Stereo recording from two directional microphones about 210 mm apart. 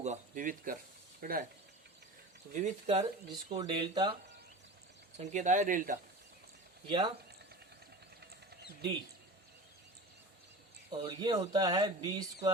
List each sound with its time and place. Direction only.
0.0 s speech: 35° right (ahead or behind)
2.5 s speech: 35° right (ahead or behind)
3.3 s a man's voice: 20° right (ahead or behind)
5.1 s speech: 35° right (ahead or behind)
6.8 s a man's voice: 20° right (ahead or behind)
11.0 s a man's voice: 20° right (ahead or behind)